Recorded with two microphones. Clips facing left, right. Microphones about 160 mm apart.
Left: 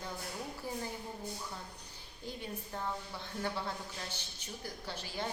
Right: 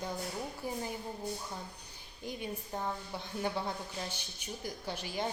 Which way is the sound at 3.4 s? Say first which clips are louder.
Right 3 dB; 15° right (ahead or behind).